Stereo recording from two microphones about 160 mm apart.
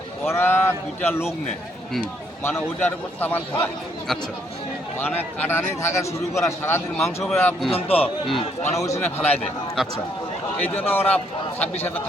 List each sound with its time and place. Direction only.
0.3 s a man's voice: 15° left (ahead or behind)
2.4 s a man's voice: 15° left (ahead or behind)
4.9 s a man's voice: 10° left (ahead or behind)
7.0 s speech: centre (ahead or behind)
7.7 s a man's voice: 40° left (ahead or behind)
8.8 s a man's voice: 15° left (ahead or behind)
9.8 s speech: centre (ahead or behind)
10.6 s a man's voice: 10° left (ahead or behind)